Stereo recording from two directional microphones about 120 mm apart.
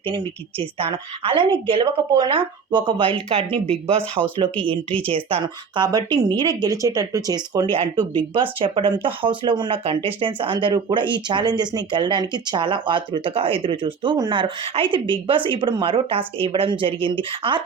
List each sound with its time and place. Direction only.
0.8 s speech: 50° right (ahead or behind)
4.7 s speech: 10° left (ahead or behind)
5.1 s speech: 45° right (ahead or behind)
7.7 s speech: 45° right (ahead or behind)